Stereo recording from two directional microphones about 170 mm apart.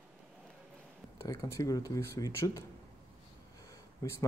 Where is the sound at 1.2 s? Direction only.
20° left (ahead or behind).